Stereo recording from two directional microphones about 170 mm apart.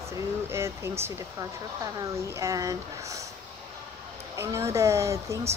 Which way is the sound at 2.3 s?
20° right (ahead or behind).